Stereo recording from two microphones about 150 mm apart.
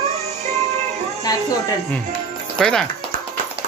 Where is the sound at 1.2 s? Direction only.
25° left (ahead or behind).